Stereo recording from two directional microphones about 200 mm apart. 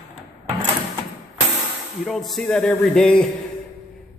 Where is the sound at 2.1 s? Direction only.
Centre (ahead or behind).